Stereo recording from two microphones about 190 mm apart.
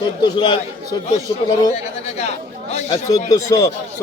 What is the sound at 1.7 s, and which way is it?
Speech, 35° left (ahead or behind).